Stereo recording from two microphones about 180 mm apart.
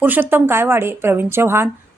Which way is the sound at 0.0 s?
10° right (ahead or behind).